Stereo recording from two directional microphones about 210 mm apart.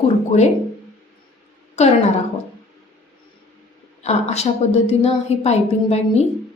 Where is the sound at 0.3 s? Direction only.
35° left (ahead or behind).